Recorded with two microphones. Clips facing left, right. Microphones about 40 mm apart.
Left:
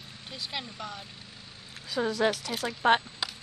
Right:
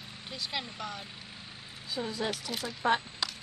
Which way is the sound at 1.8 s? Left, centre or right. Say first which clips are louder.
Left 7 dB; left.